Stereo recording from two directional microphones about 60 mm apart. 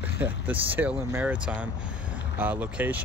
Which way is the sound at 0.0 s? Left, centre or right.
Right.